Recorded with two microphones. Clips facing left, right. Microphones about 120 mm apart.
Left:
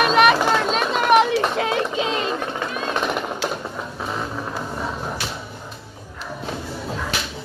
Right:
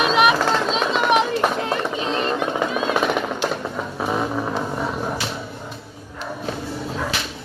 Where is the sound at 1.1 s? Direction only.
65° left (ahead or behind).